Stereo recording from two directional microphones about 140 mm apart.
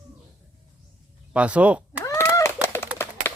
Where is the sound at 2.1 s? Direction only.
20° left (ahead or behind).